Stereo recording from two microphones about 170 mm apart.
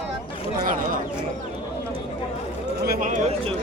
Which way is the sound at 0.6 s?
50° right (ahead or behind).